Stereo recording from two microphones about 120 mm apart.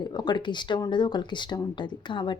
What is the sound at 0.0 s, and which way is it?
A woman's voice, 35° left (ahead or behind).